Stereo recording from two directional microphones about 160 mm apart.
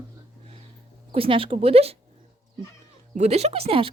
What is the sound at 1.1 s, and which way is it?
Speech, 35° right (ahead or behind).